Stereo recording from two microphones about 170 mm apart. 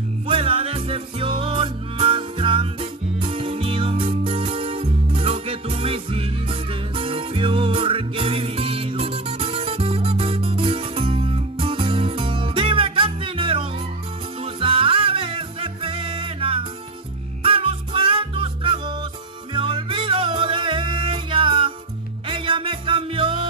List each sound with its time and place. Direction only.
0.3 s music: 35° right (ahead or behind)